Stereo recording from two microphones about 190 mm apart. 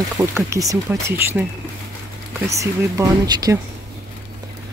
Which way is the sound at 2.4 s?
15° right (ahead or behind).